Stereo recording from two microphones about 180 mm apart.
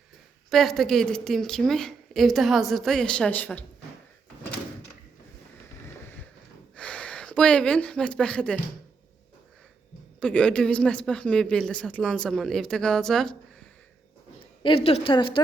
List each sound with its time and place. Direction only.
0.5 s a woman's voice: centre (ahead or behind)
6.7 s speech: 5° left (ahead or behind)
10.2 s a woman's voice: 5° left (ahead or behind)
14.6 s a woman's voice: 30° left (ahead or behind)